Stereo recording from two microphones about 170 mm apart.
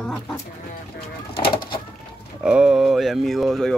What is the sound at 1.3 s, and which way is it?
Bird, 30° left (ahead or behind).